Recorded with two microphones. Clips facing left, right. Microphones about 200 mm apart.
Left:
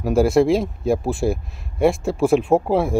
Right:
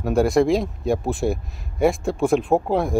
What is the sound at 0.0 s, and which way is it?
Speech, centre (ahead or behind).